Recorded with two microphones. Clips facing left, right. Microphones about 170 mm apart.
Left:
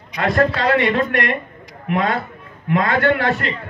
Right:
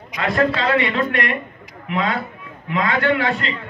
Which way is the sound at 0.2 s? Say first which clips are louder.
Left 2 dB; 55° left (ahead or behind).